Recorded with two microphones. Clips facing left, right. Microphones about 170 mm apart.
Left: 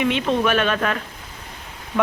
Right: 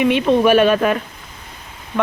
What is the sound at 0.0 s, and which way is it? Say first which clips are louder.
Speech: right 6 dB; 15° right (ahead or behind).